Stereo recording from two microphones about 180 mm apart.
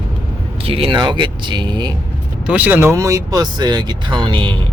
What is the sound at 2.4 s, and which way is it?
Speech, 10° right (ahead or behind).